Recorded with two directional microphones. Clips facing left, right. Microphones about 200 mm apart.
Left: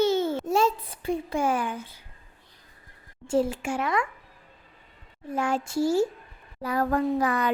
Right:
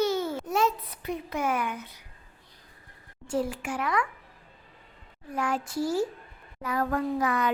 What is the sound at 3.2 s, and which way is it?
Speech, 25° left (ahead or behind).